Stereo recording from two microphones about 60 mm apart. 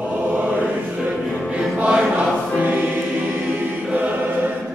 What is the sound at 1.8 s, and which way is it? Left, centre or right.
Choir, centre.